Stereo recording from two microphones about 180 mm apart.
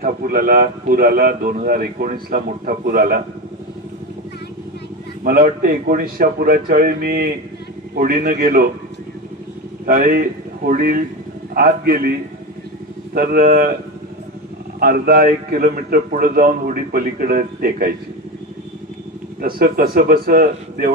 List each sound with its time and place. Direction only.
0.0 s a man's voice: 55° right (ahead or behind)
5.2 s a man's voice: 55° right (ahead or behind)
9.8 s a man's voice: 50° right (ahead or behind)
13.1 s a man's voice: 55° right (ahead or behind)
14.8 s a man's voice: 55° right (ahead or behind)
19.4 s a man's voice: 55° right (ahead or behind)